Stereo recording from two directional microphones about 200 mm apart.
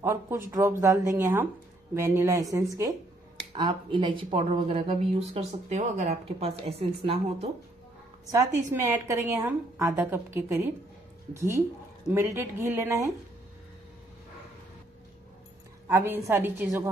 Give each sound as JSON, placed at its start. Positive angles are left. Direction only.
{"t": 0.0, "sound": "a woman's voice", "side_deg": -15}
{"t": 8.3, "sound": "a woman's voice", "side_deg": -15}
{"t": 15.9, "sound": "a woman's voice", "side_deg": -10}